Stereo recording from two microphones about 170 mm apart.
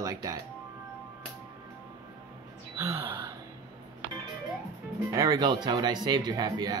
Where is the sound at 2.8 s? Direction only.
15° right (ahead or behind).